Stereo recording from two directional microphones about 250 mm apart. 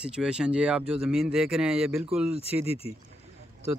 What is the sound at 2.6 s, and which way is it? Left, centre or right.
Speech, left.